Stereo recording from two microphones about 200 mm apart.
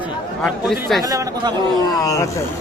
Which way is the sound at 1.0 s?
15° right (ahead or behind).